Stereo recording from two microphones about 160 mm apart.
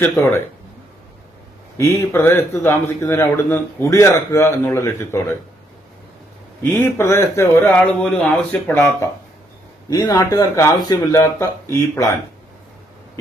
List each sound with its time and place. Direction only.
0.0 s a man's voice: 15° left (ahead or behind)
1.8 s a man's voice: 15° left (ahead or behind)
6.6 s a man's voice: 15° left (ahead or behind)